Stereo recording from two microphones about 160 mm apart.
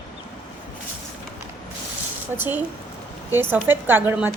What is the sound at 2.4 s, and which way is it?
A woman's voice, 10° right (ahead or behind).